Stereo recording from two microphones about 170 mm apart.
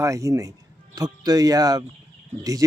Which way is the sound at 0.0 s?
20° right (ahead or behind).